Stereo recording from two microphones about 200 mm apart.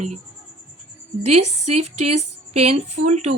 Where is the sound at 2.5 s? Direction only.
30° right (ahead or behind).